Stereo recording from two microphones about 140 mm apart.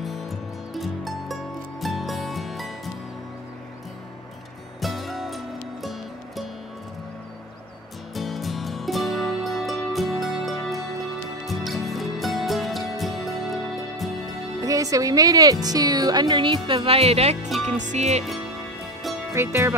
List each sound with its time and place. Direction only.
0.0 s music: centre (ahead or behind)
4.7 s music: centre (ahead or behind)
8.1 s music: centre (ahead or behind)
14.6 s speech: 25° right (ahead or behind); by 17.5 s 50° right (ahead or behind)
17.5 s music: centre (ahead or behind)
17.7 s music: 60° right (ahead or behind)
19.3 s music: 20° right (ahead or behind)